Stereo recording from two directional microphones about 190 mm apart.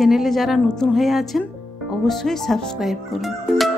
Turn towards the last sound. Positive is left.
turn(degrees=0)  # may be behind; listen again after turning